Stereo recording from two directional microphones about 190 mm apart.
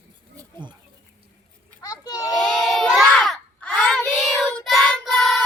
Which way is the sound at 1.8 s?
20° left (ahead or behind).